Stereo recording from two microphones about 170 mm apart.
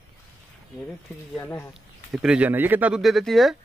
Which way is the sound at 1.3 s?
15° left (ahead or behind).